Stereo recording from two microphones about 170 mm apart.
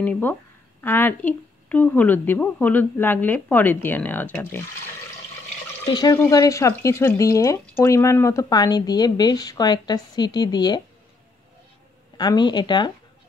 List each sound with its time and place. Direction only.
0.0 s speech: 10° left (ahead or behind)
5.9 s speech: 25° left (ahead or behind)
12.2 s speech: 25° left (ahead or behind)